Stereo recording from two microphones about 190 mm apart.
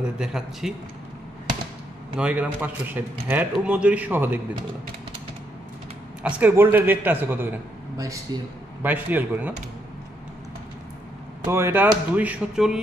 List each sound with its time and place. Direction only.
0.0 s a man's voice: 5° right (ahead or behind)
2.1 s speech: 5° right (ahead or behind)
6.2 s speech: 5° right (ahead or behind)
8.3 s a man's voice: 20° right (ahead or behind)
8.8 s speech: 10° right (ahead or behind)
11.4 s speech: 10° right (ahead or behind)